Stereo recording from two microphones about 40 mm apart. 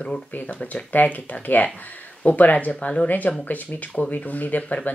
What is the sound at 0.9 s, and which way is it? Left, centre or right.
Speech, left.